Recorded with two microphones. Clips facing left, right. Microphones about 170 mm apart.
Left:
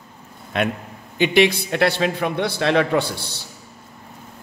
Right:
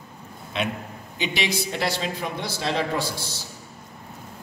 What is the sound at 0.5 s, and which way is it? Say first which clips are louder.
A man's voice: left 5 dB; 50° left (ahead or behind).